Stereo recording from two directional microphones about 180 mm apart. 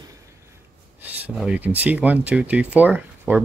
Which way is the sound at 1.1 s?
5° right (ahead or behind).